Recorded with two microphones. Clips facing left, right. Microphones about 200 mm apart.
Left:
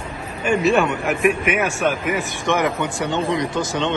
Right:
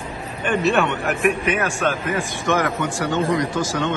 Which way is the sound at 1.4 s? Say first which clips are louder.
Left 1 dB; 15° left (ahead or behind).